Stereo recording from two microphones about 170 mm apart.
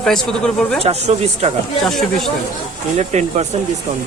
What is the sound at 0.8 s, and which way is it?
Speech, 40° right (ahead or behind).